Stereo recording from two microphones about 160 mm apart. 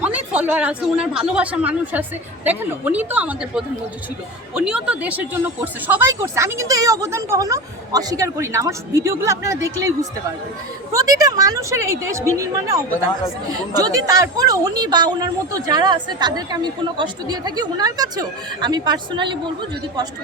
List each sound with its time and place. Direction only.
0.0 s speech: 10° right (ahead or behind); by 19.4 s 30° right (ahead or behind)